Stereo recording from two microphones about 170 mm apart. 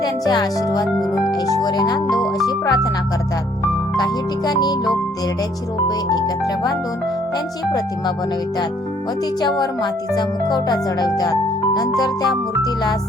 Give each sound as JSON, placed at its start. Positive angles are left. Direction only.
{"t": 0.0, "sound": "speech", "side_deg": 25}
{"t": 1.3, "sound": "music", "side_deg": 25}
{"t": 2.5, "sound": "speech", "side_deg": 20}
{"t": 3.9, "sound": "speech", "side_deg": 25}
{"t": 6.1, "sound": "speech", "side_deg": 25}
{"t": 9.6, "sound": "speech", "side_deg": 25}